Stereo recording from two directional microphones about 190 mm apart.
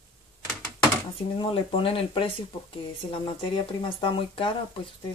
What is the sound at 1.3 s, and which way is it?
Speech, 25° left (ahead or behind).